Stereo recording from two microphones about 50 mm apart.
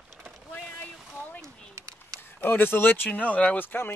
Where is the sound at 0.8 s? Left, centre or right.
Left.